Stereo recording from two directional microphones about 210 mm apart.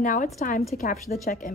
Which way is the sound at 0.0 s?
35° left (ahead or behind).